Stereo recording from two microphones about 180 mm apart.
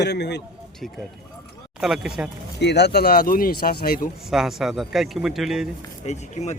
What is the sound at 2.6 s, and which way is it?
Speech, 70° left (ahead or behind).